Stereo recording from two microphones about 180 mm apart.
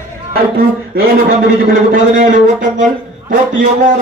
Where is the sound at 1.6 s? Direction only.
45° right (ahead or behind).